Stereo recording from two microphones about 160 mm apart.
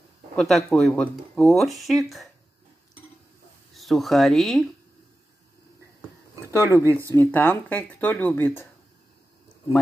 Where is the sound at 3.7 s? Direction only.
Centre (ahead or behind).